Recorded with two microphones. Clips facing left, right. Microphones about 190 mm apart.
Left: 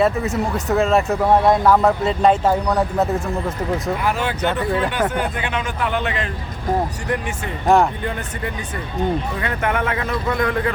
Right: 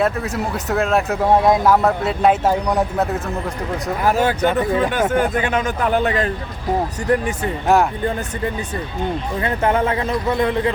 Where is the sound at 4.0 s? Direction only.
40° right (ahead or behind).